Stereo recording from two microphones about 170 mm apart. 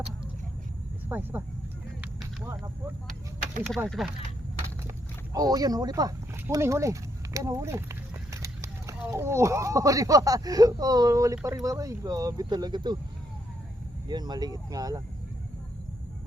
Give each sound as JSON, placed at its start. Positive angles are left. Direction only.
{"t": 1.0, "sound": "speech", "side_deg": -10}
{"t": 3.8, "sound": "speech", "side_deg": 0}
{"t": 5.3, "sound": "speech", "side_deg": -20}
{"t": 14.1, "sound": "speech", "side_deg": -25}